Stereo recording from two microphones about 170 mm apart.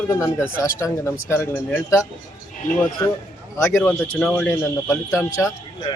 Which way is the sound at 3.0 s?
25° left (ahead or behind).